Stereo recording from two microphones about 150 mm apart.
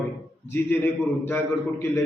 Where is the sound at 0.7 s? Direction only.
15° left (ahead or behind).